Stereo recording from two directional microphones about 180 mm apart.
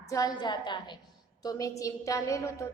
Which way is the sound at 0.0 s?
20° left (ahead or behind).